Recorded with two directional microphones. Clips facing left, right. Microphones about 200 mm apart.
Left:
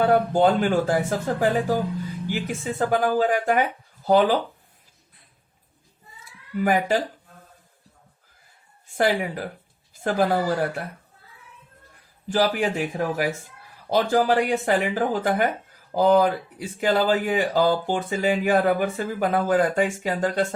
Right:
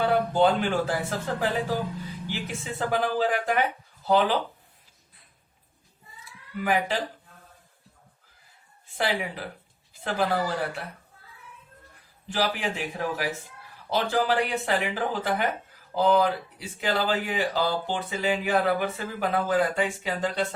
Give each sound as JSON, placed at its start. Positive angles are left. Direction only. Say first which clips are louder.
{"t": 0.0, "sound": "speech", "louder": "left 3 dB", "side_deg": 45}
{"t": 6.6, "sound": "speech", "louder": "left 5 dB", "side_deg": 45}
{"t": 9.0, "sound": "speech", "louder": "left 6 dB", "side_deg": 45}
{"t": 12.3, "sound": "speech", "louder": "left 6 dB", "side_deg": 45}